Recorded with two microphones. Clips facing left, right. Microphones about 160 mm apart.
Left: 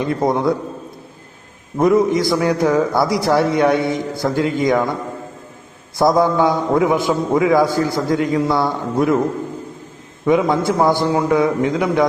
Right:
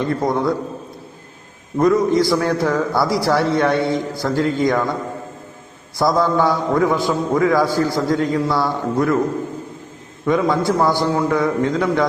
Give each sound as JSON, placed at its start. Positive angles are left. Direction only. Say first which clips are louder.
{"t": 0.0, "sound": "a man's voice", "louder": "left 2 dB", "side_deg": 20}
{"t": 1.8, "sound": "a man's voice", "louder": "left 1 dB", "side_deg": 20}
{"t": 6.0, "sound": "a man's voice", "louder": "left 2 dB", "side_deg": 20}
{"t": 10.2, "sound": "a man's voice", "louder": "left 2 dB", "side_deg": 20}